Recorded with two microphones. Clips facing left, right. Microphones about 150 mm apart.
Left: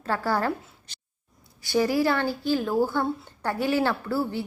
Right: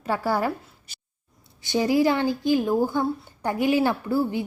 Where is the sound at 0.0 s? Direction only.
15° right (ahead or behind).